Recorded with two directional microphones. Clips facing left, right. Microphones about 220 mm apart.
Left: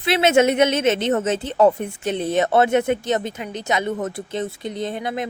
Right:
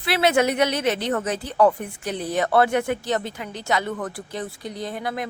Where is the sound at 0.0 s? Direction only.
20° left (ahead or behind).